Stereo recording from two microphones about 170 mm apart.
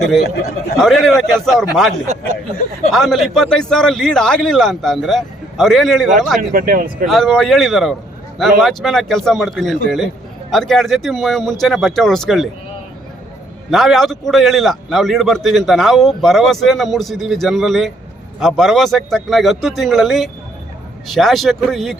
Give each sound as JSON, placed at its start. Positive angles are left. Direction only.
{"t": 0.8, "sound": "a man's voice", "side_deg": 0}
{"t": 2.9, "sound": "a man's voice", "side_deg": 0}
{"t": 6.5, "sound": "speech", "side_deg": -55}
{"t": 7.1, "sound": "a man's voice", "side_deg": 0}
{"t": 13.7, "sound": "a man's voice", "side_deg": 0}